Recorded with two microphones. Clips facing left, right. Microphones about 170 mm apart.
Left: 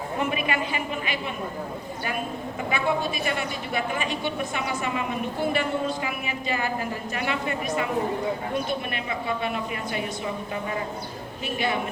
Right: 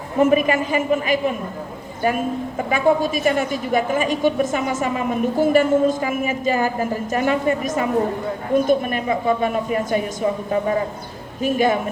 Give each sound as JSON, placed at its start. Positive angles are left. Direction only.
{"t": 0.2, "sound": "a man's voice", "side_deg": -40}